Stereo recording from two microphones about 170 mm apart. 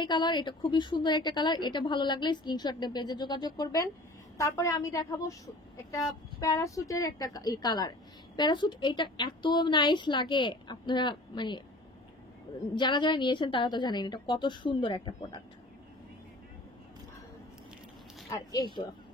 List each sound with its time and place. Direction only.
0.0 s a woman's voice: 25° left (ahead or behind)
6.4 s a woman's voice: 20° left (ahead or behind)
12.7 s a woman's voice: 25° left (ahead or behind)
18.5 s a woman's voice: 25° left (ahead or behind)